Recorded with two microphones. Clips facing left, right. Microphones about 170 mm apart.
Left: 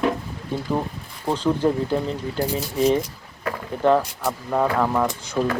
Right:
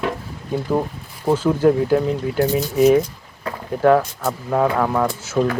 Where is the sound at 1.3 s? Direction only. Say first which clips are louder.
Right 5 dB; 10° right (ahead or behind).